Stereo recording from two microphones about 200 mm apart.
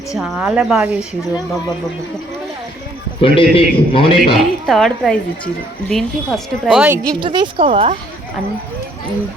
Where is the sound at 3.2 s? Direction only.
25° left (ahead or behind).